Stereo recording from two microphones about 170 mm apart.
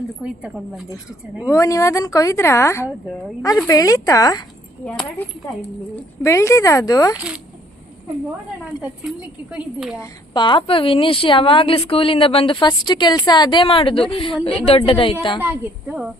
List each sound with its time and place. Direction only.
1.5 s a woman's voice: 20° left (ahead or behind)
4.9 s a woman's voice: 10° left (ahead or behind)
8.8 s speech: 5° right (ahead or behind)
10.0 s a woman's voice: 25° left (ahead or behind)
15.4 s speech: 10° right (ahead or behind)